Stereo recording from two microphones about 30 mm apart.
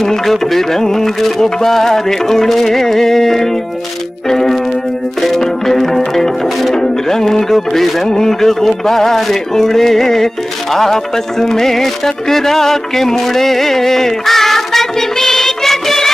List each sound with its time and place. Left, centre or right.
0.3 s music: centre